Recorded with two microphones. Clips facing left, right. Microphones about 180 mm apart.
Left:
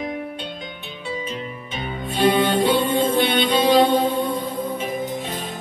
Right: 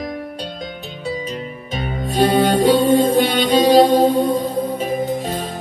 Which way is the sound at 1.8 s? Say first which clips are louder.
Right 4 dB; 40° right (ahead or behind).